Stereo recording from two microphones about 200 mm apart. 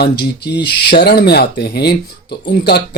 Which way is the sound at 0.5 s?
55° left (ahead or behind).